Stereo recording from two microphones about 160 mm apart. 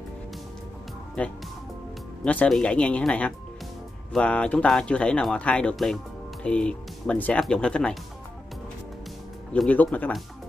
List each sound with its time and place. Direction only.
1.2 s speech: 10° left (ahead or behind)
9.5 s speech: 10° left (ahead or behind)